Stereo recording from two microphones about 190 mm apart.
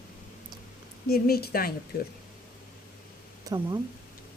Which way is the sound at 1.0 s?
55° left (ahead or behind).